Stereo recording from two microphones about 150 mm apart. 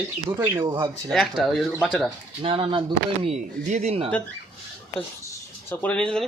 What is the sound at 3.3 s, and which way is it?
Speech, 50° right (ahead or behind).